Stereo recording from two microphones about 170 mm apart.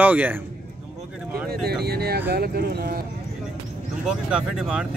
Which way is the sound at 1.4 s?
65° right (ahead or behind).